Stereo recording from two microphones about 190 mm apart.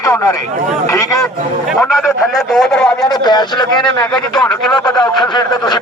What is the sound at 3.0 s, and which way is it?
Speech, 20° left (ahead or behind).